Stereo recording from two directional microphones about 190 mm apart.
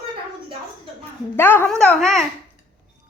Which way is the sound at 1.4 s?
10° left (ahead or behind).